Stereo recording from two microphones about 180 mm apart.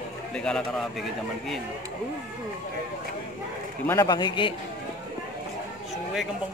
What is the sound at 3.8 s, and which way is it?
Speech, 20° left (ahead or behind).